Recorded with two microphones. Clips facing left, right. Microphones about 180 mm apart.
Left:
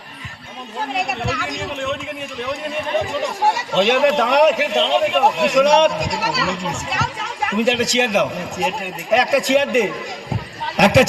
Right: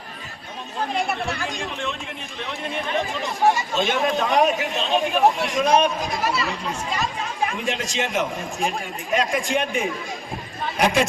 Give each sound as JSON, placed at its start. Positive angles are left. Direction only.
{"t": 1.2, "sound": "a man's voice", "side_deg": 75}
{"t": 3.5, "sound": "a man's voice", "side_deg": 75}